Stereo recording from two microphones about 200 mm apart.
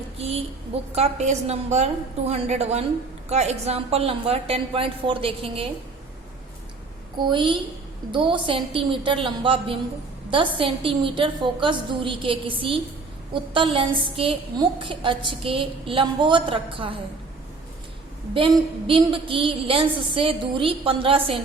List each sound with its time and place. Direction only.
0.2 s a woman's voice: 30° right (ahead or behind)
7.2 s a woman's voice: 25° right (ahead or behind)
18.3 s a woman's voice: 25° right (ahead or behind)